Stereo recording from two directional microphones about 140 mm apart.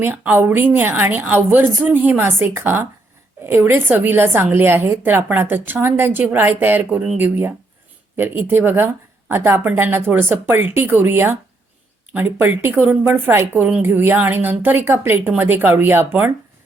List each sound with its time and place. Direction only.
0.0 s a woman's voice: 15° right (ahead or behind)